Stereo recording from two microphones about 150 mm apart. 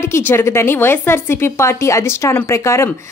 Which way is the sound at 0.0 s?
15° left (ahead or behind).